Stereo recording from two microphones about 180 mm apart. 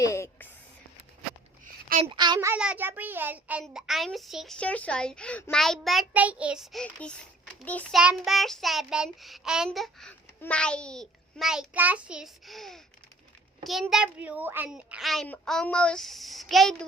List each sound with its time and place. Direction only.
0.0 s a sound: 15° left (ahead or behind)
1.9 s a child's voice: 35° right (ahead or behind)
2.1 s a woman's voice: 25° right (ahead or behind)
2.5 s child singing: 10° right (ahead or behind)
7.6 s a child's voice: 10° left (ahead or behind)
7.9 s child singing: centre (ahead or behind)
13.9 s child singing: 5° right (ahead or behind)